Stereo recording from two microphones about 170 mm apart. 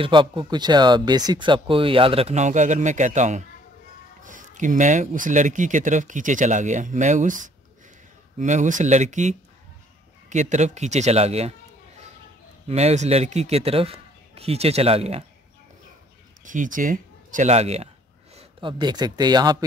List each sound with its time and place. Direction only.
0.0 s speech: 30° right (ahead or behind)
12.6 s speech: 40° right (ahead or behind)
16.4 s speech: 50° right (ahead or behind); by 19.6 s 25° right (ahead or behind)